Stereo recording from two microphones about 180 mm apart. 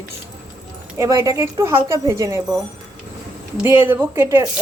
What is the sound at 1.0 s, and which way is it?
Speech, 15° right (ahead or behind).